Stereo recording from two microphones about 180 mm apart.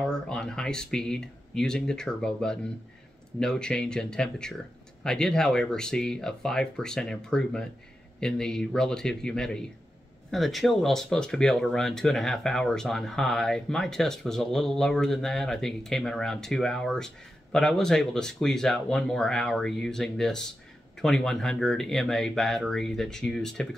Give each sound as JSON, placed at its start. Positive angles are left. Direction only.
{"t": 0.0, "sound": "speech", "side_deg": 5}